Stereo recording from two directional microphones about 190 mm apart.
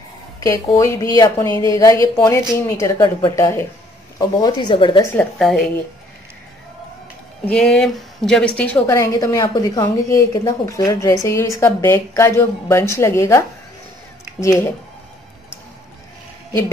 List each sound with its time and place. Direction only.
0.4 s a woman's voice: 15° left (ahead or behind)
5.1 s speech: 5° left (ahead or behind)
7.4 s a woman's voice: 5° left (ahead or behind)